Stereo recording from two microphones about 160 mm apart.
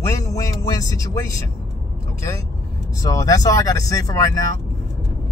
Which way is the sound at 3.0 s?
20° left (ahead or behind).